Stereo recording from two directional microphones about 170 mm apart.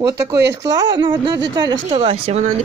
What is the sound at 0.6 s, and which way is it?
Speech, 25° right (ahead or behind).